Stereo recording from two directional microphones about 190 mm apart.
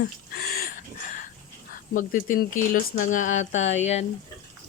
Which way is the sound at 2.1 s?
45° left (ahead or behind).